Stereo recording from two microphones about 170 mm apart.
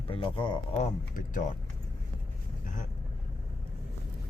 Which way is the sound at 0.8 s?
50° left (ahead or behind).